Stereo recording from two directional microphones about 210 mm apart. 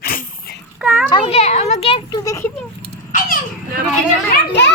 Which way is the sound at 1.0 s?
25° left (ahead or behind).